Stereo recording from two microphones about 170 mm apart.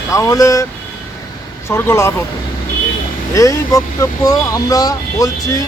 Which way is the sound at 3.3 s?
20° left (ahead or behind).